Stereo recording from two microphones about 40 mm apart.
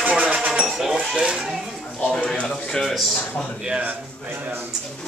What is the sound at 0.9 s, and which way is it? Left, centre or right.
Speech, right.